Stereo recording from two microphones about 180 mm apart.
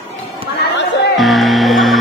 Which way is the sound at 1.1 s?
Centre (ahead or behind).